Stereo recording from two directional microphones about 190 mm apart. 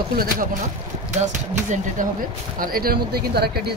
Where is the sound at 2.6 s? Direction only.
50° right (ahead or behind).